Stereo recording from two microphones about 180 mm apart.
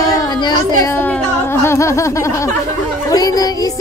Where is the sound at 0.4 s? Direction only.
15° left (ahead or behind).